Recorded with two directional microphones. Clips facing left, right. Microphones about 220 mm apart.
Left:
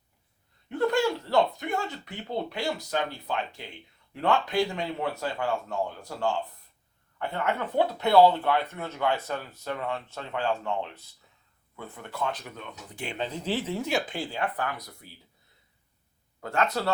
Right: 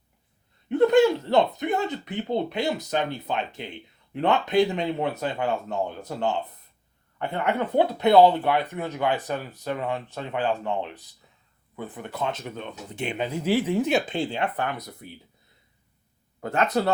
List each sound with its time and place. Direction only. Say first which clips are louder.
0.7 s speech: right 7 dB; 20° right (ahead or behind)
16.4 s speech: right 4 dB; 20° right (ahead or behind)